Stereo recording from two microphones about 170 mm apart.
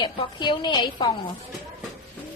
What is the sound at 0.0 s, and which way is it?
A woman's voice, 25° left (ahead or behind).